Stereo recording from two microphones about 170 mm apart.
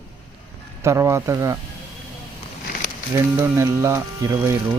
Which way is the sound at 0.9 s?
15° right (ahead or behind).